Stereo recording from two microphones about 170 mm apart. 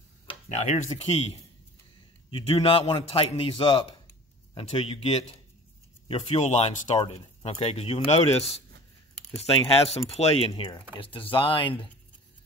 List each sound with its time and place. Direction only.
0.5 s speech: 40° left (ahead or behind)
2.3 s speech: 30° left (ahead or behind)
9.8 s speech: 40° left (ahead or behind)
10.5 s speech: 25° left (ahead or behind)